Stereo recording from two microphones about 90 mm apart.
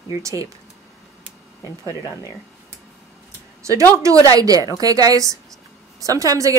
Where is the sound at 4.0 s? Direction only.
40° right (ahead or behind).